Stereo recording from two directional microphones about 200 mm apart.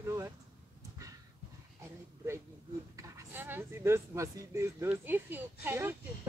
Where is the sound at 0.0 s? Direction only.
15° right (ahead or behind).